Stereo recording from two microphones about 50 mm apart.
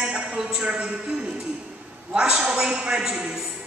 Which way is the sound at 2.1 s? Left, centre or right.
Centre.